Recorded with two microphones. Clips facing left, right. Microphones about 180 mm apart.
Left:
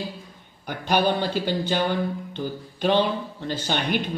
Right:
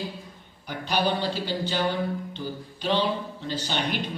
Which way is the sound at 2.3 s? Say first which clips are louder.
Left 3 dB; 50° left (ahead or behind).